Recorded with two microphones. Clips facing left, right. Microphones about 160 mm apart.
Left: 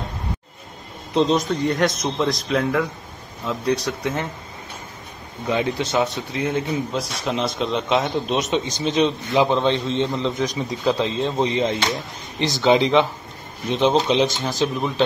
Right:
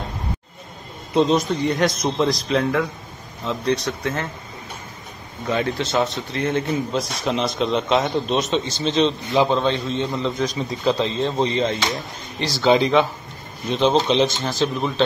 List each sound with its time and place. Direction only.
1.1 s a man's voice: centre (ahead or behind); by 4.3 s 15° left (ahead or behind)
5.5 s a man's voice: 15° left (ahead or behind)
8.4 s a man's voice: 15° left (ahead or behind)